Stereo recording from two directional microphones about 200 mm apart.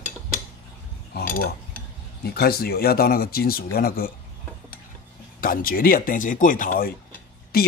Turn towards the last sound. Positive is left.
turn(degrees=50)  # may be behind; listen again after turning